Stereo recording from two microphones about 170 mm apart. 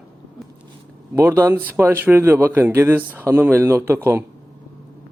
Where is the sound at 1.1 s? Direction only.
15° right (ahead or behind).